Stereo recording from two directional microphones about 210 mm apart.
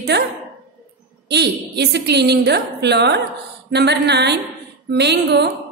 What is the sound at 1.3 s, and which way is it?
A woman's voice, 50° right (ahead or behind).